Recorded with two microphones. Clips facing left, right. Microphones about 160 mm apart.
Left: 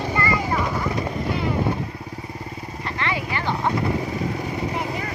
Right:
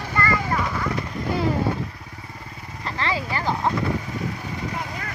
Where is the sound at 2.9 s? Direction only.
30° right (ahead or behind).